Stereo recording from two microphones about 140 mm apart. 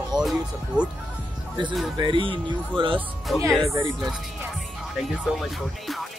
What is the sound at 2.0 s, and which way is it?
Speech, 35° right (ahead or behind).